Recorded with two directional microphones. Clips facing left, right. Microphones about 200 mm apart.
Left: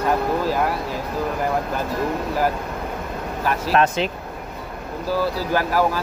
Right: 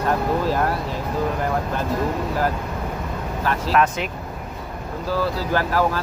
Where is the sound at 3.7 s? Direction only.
25° left (ahead or behind).